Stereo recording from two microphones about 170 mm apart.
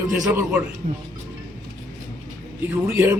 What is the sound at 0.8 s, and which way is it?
Speech, 45° right (ahead or behind).